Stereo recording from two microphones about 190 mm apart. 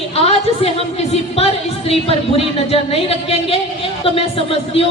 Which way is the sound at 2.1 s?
30° left (ahead or behind).